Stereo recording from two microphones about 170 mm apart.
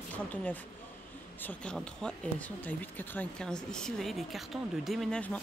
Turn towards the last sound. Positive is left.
turn(degrees=5)  # may be behind; listen again after turning